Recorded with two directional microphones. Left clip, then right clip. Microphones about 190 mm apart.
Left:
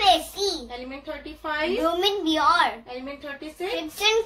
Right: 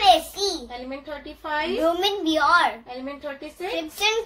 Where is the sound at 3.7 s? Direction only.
5° right (ahead or behind).